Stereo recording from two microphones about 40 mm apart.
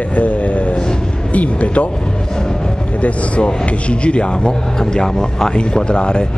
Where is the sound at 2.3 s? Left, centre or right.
Centre.